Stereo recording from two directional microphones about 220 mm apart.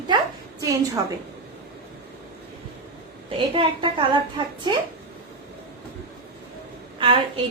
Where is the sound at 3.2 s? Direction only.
25° right (ahead or behind).